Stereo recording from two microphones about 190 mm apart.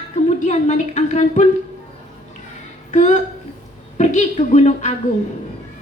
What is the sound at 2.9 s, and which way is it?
A woman's voice, 40° left (ahead or behind).